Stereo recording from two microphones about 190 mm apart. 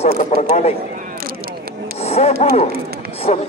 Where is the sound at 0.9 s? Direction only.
45° right (ahead or behind).